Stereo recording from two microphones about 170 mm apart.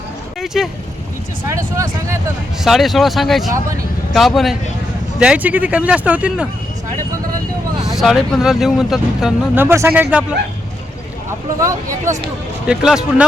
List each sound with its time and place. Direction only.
0.3 s speech: centre (ahead or behind)
1.5 s speech: 15° right (ahead or behind)
2.6 s speech: centre (ahead or behind)
7.9 s speech: centre (ahead or behind)
11.6 s speech: 20° right (ahead or behind)
12.6 s speech: 5° right (ahead or behind)